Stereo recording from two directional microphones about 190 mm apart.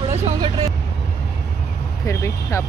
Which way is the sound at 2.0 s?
15° left (ahead or behind).